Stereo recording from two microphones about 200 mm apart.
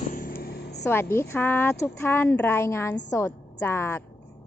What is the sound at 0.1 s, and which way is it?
Vehicle, 45° left (ahead or behind).